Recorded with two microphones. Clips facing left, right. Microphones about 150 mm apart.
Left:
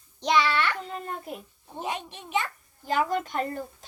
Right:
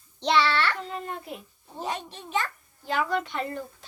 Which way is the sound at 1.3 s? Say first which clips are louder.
Left 1 dB; 45° left (ahead or behind).